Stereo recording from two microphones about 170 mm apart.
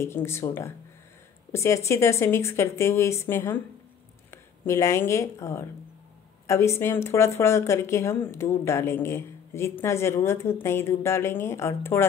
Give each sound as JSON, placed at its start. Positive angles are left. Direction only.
{"t": 0.0, "sound": "speech", "side_deg": 15}